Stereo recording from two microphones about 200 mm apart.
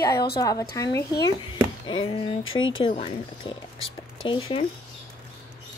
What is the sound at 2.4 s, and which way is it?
Speech, 80° left.